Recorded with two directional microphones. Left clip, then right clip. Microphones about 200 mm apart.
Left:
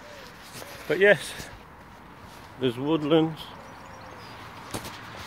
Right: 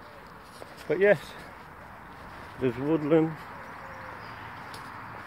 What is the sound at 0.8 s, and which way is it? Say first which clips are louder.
Speech: left 3 dB; 5° left (ahead or behind).